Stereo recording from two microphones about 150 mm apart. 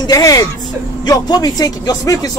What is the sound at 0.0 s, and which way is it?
A woman's voice, 25° left (ahead or behind).